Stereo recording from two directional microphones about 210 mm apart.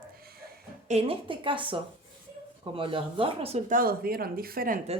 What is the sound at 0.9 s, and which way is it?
A woman's voice, 30° right (ahead or behind).